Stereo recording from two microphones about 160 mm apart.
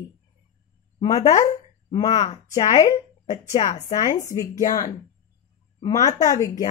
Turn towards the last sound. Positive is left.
turn(degrees=20)  # may be behind; listen again after turning